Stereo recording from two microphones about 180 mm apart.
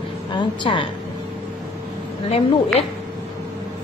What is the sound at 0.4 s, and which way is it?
Speech, 25° left (ahead or behind).